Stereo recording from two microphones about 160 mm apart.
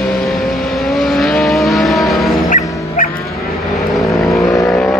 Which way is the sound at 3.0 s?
60° left (ahead or behind).